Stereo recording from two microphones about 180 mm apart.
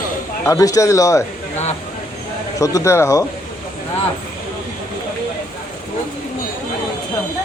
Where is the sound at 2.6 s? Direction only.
15° left (ahead or behind).